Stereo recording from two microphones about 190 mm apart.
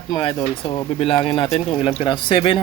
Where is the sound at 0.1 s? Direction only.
25° left (ahead or behind).